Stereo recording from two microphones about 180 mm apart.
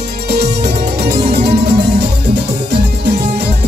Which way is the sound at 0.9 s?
65° right (ahead or behind).